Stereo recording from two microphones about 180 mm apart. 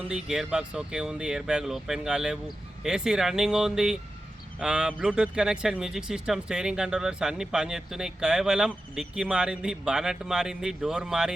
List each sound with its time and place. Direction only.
0.1 s speech: 5° right (ahead or behind)